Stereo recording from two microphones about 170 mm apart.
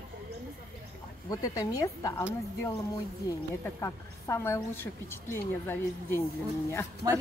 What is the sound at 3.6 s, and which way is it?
A woman's voice, 15° left (ahead or behind).